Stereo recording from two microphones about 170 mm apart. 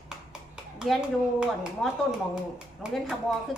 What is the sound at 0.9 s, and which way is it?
A woman's voice, centre (ahead or behind).